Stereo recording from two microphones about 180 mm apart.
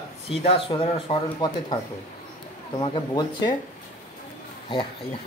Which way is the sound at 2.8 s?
25° left (ahead or behind).